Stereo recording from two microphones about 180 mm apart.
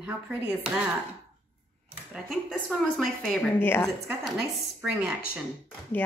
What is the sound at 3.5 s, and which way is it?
Speech, 10° left (ahead or behind).